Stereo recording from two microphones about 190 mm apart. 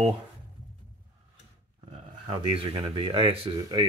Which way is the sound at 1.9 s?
30° right (ahead or behind).